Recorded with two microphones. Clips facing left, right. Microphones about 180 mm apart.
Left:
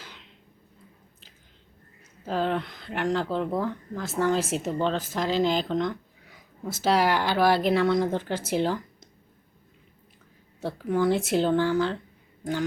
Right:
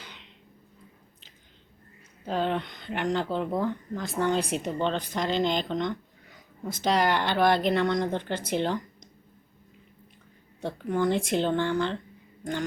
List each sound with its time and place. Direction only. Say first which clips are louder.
0.0 s a sound: left 1 dB; centre (ahead or behind)
2.2 s speech: left 1 dB; centre (ahead or behind)
10.6 s speech: left 2 dB; 5° left (ahead or behind)